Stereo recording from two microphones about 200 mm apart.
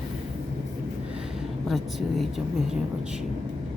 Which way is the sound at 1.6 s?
Centre (ahead or behind).